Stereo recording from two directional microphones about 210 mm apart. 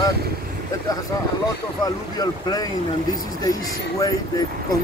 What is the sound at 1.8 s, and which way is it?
Speech, 20° left (ahead or behind).